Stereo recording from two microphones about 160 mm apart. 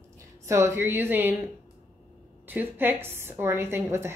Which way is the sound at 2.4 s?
10° right (ahead or behind).